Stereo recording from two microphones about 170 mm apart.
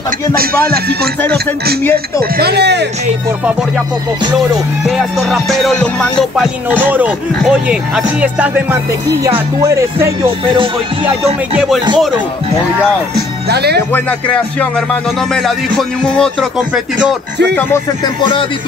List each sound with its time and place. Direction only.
0.7 s music: 65° right (ahead or behind)
2.3 s speech: 70° right (ahead or behind)
4.8 s music: centre (ahead or behind)
9.6 s speech: 20° right (ahead or behind)
13.5 s music: 75° right (ahead or behind)
13.9 s music: 10° left (ahead or behind)
16.0 s music: 5° left (ahead or behind)